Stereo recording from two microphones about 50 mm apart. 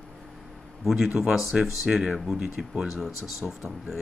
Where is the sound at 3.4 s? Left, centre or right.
Centre.